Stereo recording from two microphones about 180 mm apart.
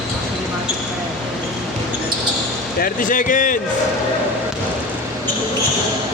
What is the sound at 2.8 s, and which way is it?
Speech, 50° left (ahead or behind).